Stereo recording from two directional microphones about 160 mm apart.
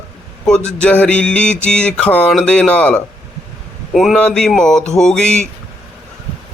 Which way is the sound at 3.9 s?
Centre (ahead or behind).